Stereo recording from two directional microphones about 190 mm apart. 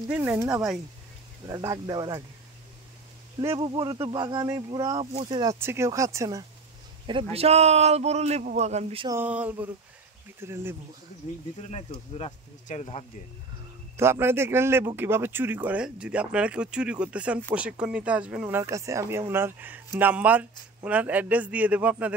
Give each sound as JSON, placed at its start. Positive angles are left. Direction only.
{"t": 0.1, "sound": "speech", "side_deg": -10}
{"t": 1.4, "sound": "speech", "side_deg": -20}
{"t": 3.3, "sound": "speech", "side_deg": -20}
{"t": 7.3, "sound": "a man's voice", "side_deg": -35}
{"t": 9.1, "sound": "speech", "side_deg": -10}
{"t": 11.7, "sound": "speech", "side_deg": 30}
{"t": 13.9, "sound": "speech", "side_deg": -15}